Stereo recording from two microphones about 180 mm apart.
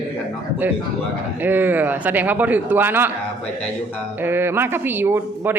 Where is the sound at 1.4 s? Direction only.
10° right (ahead or behind).